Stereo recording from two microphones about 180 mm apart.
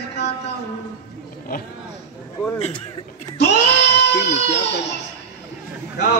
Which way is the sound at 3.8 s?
70° left (ahead or behind).